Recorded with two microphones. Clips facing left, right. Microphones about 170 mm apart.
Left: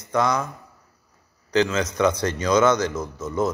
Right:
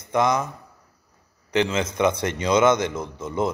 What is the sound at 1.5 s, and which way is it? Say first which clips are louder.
A man's voice: left 1 dB; 25° right (ahead or behind).